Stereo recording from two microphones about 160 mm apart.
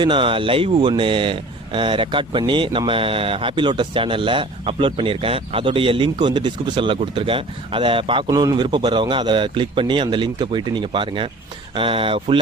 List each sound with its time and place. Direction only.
0.0 s speech: 30° right (ahead or behind)
8.3 s a man's voice: 25° right (ahead or behind)